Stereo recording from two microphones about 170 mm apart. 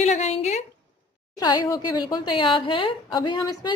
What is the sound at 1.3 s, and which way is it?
A woman's voice, 25° left (ahead or behind).